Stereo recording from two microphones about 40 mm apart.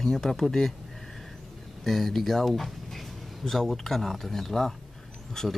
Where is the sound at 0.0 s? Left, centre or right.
Centre.